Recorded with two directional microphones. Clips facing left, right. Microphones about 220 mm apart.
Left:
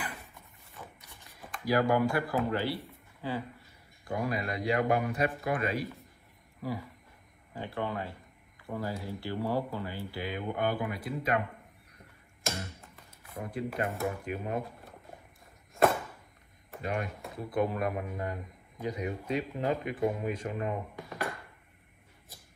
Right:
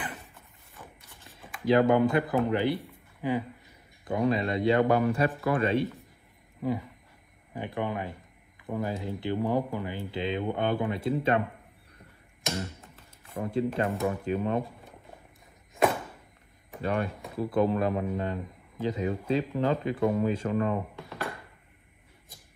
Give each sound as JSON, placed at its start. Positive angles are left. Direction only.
{"t": 1.6, "sound": "a man's voice", "side_deg": -25}
{"t": 7.5, "sound": "a man's voice", "side_deg": -15}
{"t": 13.3, "sound": "a man's voice", "side_deg": -25}
{"t": 16.8, "sound": "a man's voice", "side_deg": -30}